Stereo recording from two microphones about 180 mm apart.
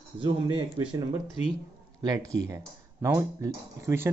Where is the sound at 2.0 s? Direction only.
20° right (ahead or behind).